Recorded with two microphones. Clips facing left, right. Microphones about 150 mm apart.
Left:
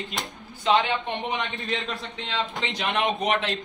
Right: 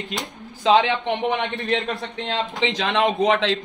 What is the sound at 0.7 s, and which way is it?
A man's voice, 85° right.